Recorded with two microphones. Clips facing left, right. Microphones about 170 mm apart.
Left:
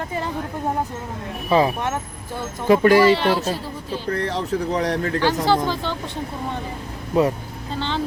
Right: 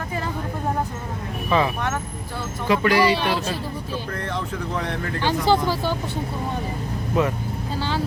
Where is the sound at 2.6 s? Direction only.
45° left (ahead or behind).